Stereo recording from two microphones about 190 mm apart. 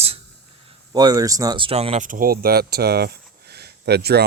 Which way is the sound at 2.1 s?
45° right (ahead or behind).